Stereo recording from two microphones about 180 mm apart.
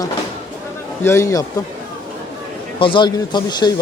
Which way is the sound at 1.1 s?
15° left (ahead or behind).